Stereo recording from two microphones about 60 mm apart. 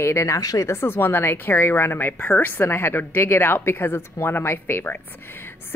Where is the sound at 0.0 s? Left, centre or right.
Left.